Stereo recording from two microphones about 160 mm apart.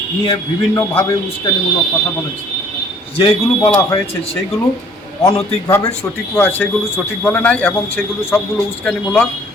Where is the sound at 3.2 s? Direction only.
35° left (ahead or behind).